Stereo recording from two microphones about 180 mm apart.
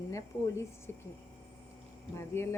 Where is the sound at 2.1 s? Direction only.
15° left (ahead or behind).